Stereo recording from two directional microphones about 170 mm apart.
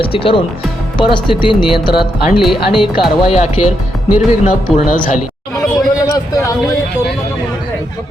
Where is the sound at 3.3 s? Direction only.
40° left (ahead or behind).